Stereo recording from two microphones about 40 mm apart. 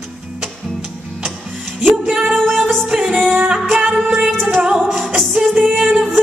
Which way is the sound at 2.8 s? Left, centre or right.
Centre.